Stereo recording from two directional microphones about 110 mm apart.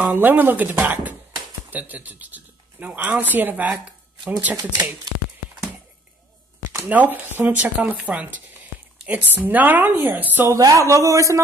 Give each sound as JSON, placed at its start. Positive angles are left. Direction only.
{"t": 0.0, "sound": "speech", "side_deg": -15}
{"t": 6.9, "sound": "speech", "side_deg": -15}
{"t": 10.6, "sound": "a man's voice", "side_deg": -30}